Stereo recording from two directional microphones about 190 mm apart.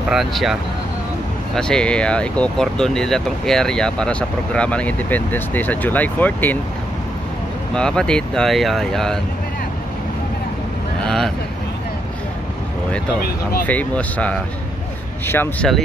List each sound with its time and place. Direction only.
0.1 s speech: centre (ahead or behind)
7.7 s speech: 5° left (ahead or behind)
11.1 s speech: centre (ahead or behind)
13.2 s speech: 50° left (ahead or behind)
13.7 s speech: 10° left (ahead or behind)